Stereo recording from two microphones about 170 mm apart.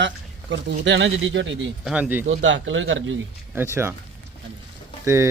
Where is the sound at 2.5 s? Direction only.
90° right.